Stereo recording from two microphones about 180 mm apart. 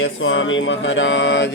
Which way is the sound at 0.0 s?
90° left.